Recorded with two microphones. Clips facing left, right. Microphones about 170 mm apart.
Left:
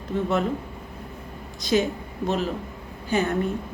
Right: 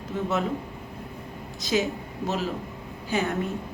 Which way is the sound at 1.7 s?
5° right (ahead or behind).